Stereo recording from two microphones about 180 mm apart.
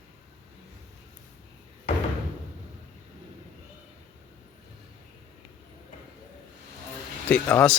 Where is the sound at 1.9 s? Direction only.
40° left (ahead or behind).